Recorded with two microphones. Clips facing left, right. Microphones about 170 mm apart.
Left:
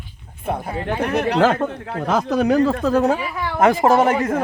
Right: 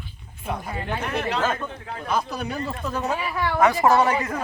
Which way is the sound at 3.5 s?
50° left (ahead or behind).